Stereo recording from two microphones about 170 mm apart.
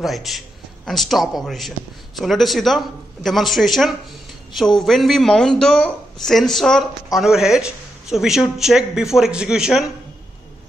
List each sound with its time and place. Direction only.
0.0 s a man's voice: centre (ahead or behind)